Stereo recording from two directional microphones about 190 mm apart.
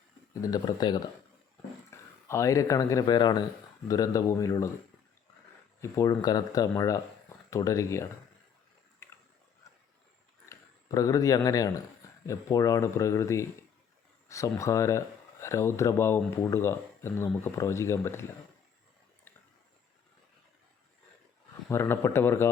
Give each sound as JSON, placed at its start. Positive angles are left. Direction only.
{"t": 0.4, "sound": "speech", "side_deg": 20}
{"t": 5.8, "sound": "speech", "side_deg": 20}
{"t": 10.5, "sound": "speech", "side_deg": 15}
{"t": 21.7, "sound": "speech", "side_deg": 15}